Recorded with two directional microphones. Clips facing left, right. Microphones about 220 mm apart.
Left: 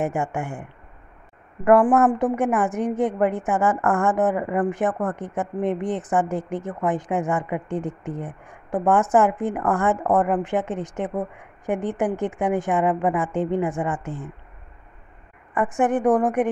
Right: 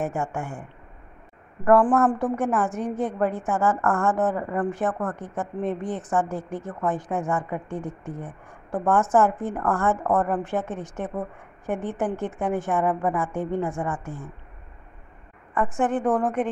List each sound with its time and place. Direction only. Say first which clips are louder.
0.0 s a woman's voice: left 3 dB; 15° left (ahead or behind)
15.8 s a woman's voice: left 4 dB; 15° left (ahead or behind)